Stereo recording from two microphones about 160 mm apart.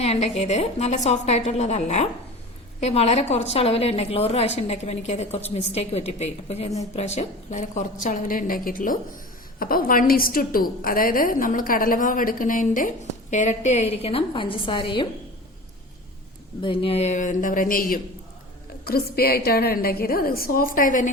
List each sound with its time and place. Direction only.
0.0 s a woman's voice: 40° left (ahead or behind)
16.6 s a woman's voice: 35° left (ahead or behind); by 18.0 s 60° left (ahead or behind)
18.9 s a woman's voice: 75° left (ahead or behind); by 21.1 s 55° left (ahead or behind)